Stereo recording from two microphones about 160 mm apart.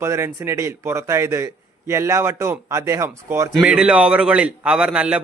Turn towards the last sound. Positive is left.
turn(degrees=-5)  # may be behind; listen again after turning